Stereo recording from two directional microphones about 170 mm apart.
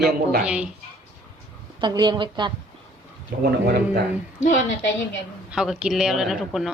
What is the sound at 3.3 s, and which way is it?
Speech, 75° right (ahead or behind).